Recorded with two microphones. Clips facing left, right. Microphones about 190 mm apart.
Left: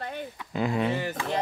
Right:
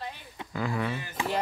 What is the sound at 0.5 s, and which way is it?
Speech, 20° left (ahead or behind).